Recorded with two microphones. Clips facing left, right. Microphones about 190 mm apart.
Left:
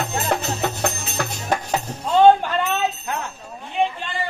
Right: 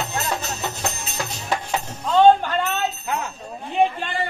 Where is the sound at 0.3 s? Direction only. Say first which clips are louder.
Left 4 dB; 60° left (ahead or behind).